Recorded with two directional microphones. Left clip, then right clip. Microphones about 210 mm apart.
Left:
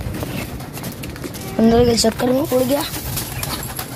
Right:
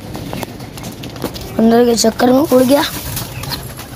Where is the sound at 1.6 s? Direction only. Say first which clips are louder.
Right 3 dB; 15° right (ahead or behind).